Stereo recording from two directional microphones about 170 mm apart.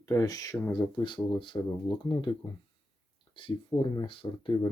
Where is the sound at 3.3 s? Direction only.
30° left (ahead or behind).